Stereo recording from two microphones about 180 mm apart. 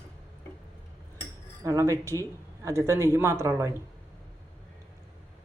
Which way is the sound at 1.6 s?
15° right (ahead or behind).